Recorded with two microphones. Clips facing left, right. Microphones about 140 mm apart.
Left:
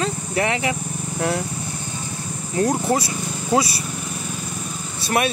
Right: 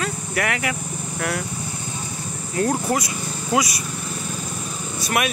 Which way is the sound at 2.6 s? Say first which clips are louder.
Left 2 dB; 25° left (ahead or behind).